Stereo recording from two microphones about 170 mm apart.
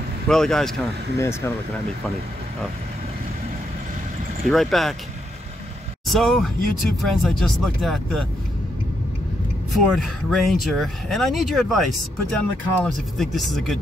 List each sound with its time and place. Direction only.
0.3 s speech: 5° left (ahead or behind)
1.1 s speech: 15° left (ahead or behind)
4.5 s speech: centre (ahead or behind)
6.0 s speech: centre (ahead or behind)
9.7 s speech: centre (ahead or behind)